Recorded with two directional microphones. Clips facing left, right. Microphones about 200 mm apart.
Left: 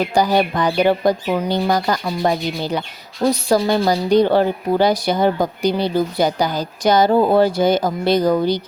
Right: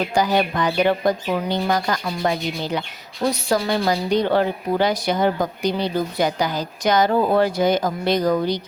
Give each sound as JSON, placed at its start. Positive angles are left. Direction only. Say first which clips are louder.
{"t": 0.1, "sound": "speech", "louder": "left 3 dB", "side_deg": 35}